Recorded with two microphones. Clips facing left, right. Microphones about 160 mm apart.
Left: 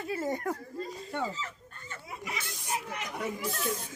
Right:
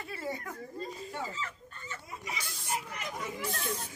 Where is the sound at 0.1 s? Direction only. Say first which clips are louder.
Left 7 dB; 45° left (ahead or behind).